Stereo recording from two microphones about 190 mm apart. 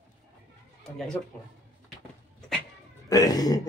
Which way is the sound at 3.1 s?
20° left (ahead or behind).